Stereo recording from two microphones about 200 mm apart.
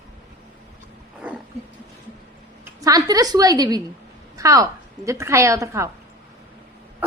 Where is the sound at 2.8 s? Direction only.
20° right (ahead or behind).